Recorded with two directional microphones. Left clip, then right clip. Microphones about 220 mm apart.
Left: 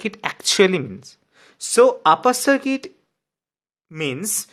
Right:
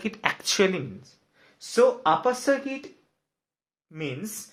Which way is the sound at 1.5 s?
45° left (ahead or behind).